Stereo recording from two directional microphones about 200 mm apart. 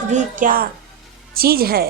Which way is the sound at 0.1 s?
40° right (ahead or behind).